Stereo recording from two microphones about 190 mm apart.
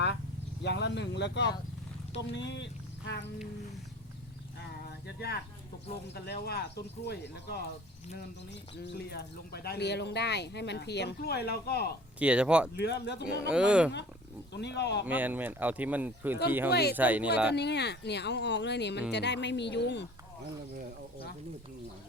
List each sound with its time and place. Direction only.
0.6 s speech: 65° left (ahead or behind)
5.0 s speech: 55° left (ahead or behind)
8.8 s speech: 60° left (ahead or behind)
12.2 s speech: 5° right (ahead or behind)
12.7 s speech: 60° left (ahead or behind)
13.2 s speech: 5° right (ahead or behind)
14.5 s speech: 65° left (ahead or behind)
15.0 s speech: 10° right (ahead or behind)
17.5 s speech: 60° left (ahead or behind)